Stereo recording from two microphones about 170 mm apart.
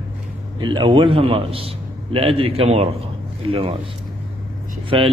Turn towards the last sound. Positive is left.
turn(degrees=-30)  # may be behind; listen again after turning